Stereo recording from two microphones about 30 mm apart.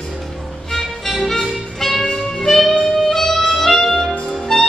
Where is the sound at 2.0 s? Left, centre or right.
Left.